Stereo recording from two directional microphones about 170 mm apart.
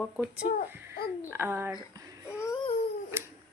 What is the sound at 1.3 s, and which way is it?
Speech, 15° right (ahead or behind).